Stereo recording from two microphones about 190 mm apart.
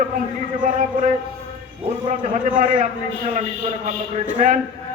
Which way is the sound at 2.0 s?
45° right (ahead or behind).